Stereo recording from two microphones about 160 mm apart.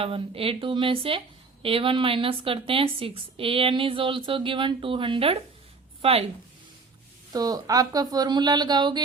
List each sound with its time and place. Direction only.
0.0 s a woman's voice: 35° right (ahead or behind)
7.3 s speech: 25° right (ahead or behind)